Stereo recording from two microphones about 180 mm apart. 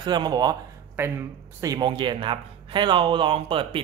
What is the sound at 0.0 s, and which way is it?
Speech, 25° right (ahead or behind).